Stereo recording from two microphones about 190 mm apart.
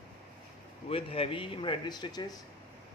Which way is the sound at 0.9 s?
30° left (ahead or behind).